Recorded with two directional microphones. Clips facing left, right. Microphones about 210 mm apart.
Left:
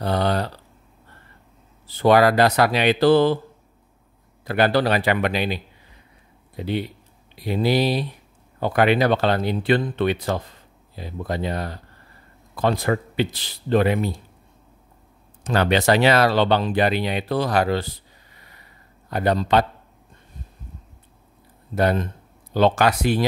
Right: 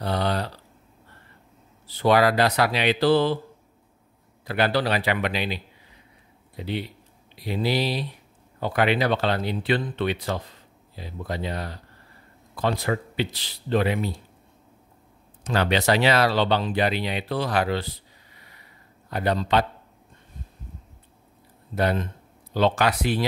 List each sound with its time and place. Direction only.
0.0 s a sound: 50° left (ahead or behind)
2.0 s speech: 50° left (ahead or behind)
4.5 s speech: 50° left (ahead or behind)
15.4 s speech: 50° left (ahead or behind)
19.0 s speech: 45° left (ahead or behind)
21.7 s speech: 45° left (ahead or behind)